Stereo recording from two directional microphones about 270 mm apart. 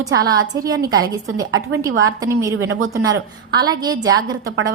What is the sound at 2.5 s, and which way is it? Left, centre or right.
Speech, right.